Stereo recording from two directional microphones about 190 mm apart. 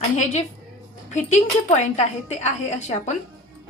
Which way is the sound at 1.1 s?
40° left (ahead or behind).